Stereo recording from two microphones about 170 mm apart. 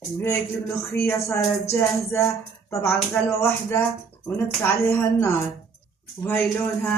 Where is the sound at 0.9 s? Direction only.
15° left (ahead or behind).